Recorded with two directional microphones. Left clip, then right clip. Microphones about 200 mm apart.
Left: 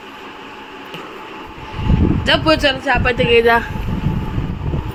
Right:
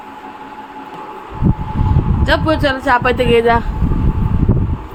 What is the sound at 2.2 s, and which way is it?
Speech, 5° right (ahead or behind).